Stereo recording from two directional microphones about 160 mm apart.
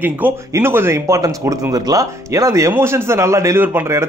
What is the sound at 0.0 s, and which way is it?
Speech, 15° right (ahead or behind).